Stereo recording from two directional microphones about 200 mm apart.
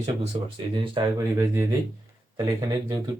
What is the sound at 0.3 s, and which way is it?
Speech, 25° right (ahead or behind).